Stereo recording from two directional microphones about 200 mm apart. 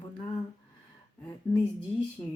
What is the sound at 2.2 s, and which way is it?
Speech, 15° left (ahead or behind).